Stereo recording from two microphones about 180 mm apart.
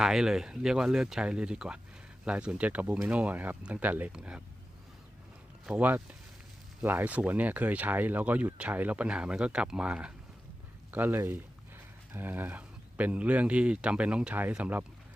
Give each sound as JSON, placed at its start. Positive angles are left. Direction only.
{"t": 0.0, "sound": "speech", "side_deg": -5}
{"t": 5.6, "sound": "speech", "side_deg": -10}